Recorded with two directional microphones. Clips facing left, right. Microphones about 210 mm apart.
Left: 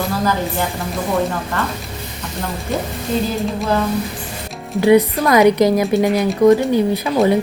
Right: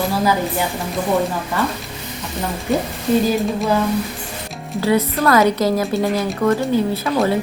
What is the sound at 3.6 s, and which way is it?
Speech, 5° right (ahead or behind).